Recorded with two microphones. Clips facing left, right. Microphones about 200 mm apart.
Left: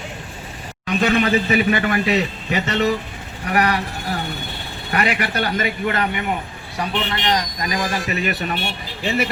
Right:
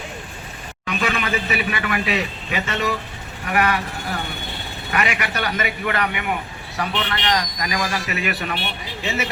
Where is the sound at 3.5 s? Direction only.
35° left (ahead or behind).